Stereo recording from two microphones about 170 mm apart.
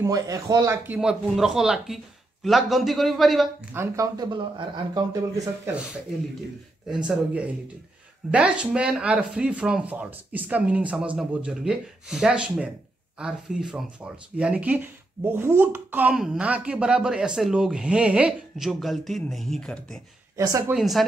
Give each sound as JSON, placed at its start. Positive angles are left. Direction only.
{"t": 0.0, "sound": "speech", "side_deg": -20}
{"t": 3.7, "sound": "speech", "side_deg": -15}
{"t": 6.9, "sound": "speech", "side_deg": -5}
{"t": 20.3, "sound": "speech", "side_deg": -20}
{"t": 20.7, "sound": "speech", "side_deg": 0}